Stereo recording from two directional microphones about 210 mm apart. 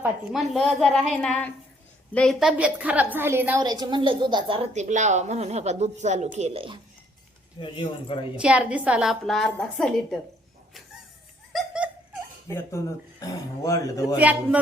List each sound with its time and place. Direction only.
0.3 s a woman's voice: centre (ahead or behind); by 6.7 s 25° right (ahead or behind)
7.6 s speech: 25° left (ahead or behind)
8.4 s a woman's voice: 5° right (ahead or behind)
11.5 s laughter: 5° right (ahead or behind)
12.5 s speech: 15° left (ahead or behind)
14.2 s a man's voice: 5° right (ahead or behind)